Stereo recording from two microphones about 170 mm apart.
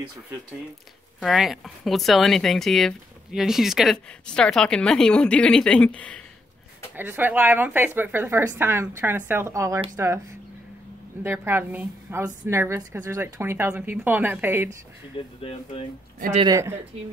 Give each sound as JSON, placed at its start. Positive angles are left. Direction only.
{"t": 1.2, "sound": "speech", "side_deg": 0}
{"t": 7.0, "sound": "speech", "side_deg": -10}
{"t": 11.2, "sound": "speech", "side_deg": -10}
{"t": 15.2, "sound": "speech", "side_deg": 30}